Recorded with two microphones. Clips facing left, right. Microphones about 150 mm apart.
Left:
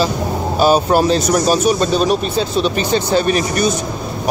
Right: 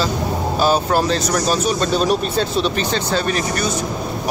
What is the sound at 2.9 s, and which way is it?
Speech, 15° left (ahead or behind).